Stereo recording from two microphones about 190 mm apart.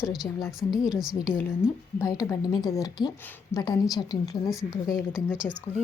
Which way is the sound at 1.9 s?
15° left (ahead or behind).